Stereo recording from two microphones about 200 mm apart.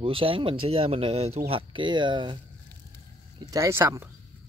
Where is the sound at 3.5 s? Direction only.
15° right (ahead or behind).